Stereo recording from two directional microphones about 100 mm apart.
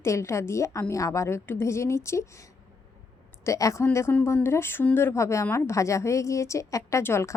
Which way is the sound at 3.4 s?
30° left (ahead or behind).